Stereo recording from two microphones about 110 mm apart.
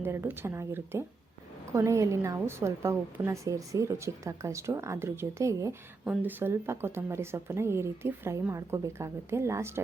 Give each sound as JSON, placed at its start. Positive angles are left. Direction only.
{"t": 0.0, "sound": "a woman's voice", "side_deg": -20}
{"t": 6.1, "sound": "a woman's voice", "side_deg": -20}